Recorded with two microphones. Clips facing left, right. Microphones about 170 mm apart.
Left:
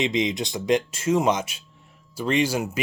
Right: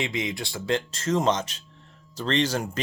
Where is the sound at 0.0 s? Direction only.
20° left (ahead or behind).